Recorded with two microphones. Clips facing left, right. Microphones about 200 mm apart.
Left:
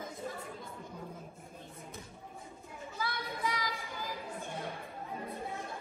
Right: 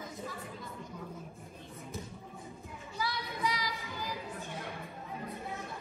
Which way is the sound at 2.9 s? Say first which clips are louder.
Right 2 dB; 50° left (ahead or behind).